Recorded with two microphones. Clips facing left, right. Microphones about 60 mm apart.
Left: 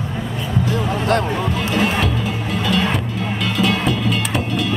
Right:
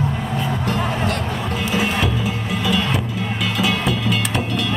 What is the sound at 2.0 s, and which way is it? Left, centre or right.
Music, centre.